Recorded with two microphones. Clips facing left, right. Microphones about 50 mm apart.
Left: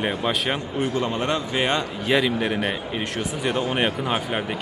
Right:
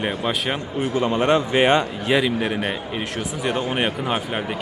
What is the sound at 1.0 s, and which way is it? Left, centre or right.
Speech, right.